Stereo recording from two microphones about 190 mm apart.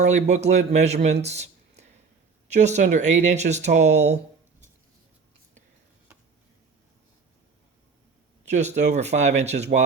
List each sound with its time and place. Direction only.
0.1 s a man's voice: 35° right (ahead or behind)
8.4 s speech: 40° right (ahead or behind)